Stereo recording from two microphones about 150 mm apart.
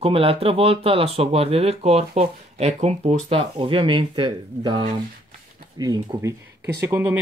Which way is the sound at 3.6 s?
35° right (ahead or behind).